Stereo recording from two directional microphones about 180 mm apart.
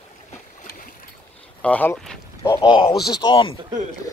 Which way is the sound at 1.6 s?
10° left (ahead or behind).